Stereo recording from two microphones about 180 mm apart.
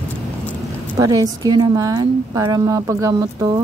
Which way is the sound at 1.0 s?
20° right (ahead or behind).